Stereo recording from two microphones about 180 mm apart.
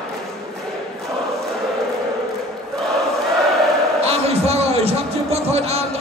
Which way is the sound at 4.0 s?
35° right (ahead or behind).